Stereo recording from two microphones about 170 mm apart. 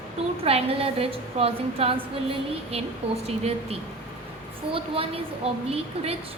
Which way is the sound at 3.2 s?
40° right (ahead or behind).